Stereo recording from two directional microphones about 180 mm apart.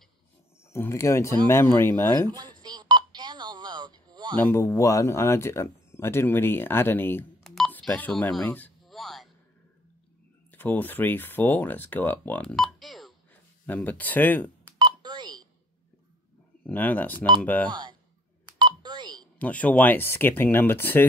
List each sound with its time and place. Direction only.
0.7 s speech: 15° left (ahead or behind)
2.2 s telephone dialing: 20° right (ahead or behind)
4.4 s speech: 15° left (ahead or behind)
7.5 s telephone dialing: 5° left (ahead or behind)
10.5 s speech: 10° left (ahead or behind)
14.8 s telephone dialing: 25° right (ahead or behind)
16.6 s speech: 10° left (ahead or behind)
17.6 s speech: 25° right (ahead or behind)
18.6 s telephone dialing: 25° right (ahead or behind)
19.3 s speech: 10° left (ahead or behind)